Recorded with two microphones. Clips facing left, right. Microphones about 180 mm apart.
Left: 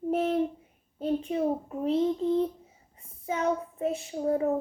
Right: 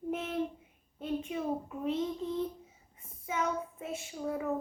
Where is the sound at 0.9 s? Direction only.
35° left (ahead or behind).